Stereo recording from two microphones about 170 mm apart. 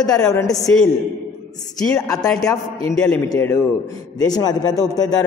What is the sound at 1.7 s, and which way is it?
Speech, 20° left (ahead or behind).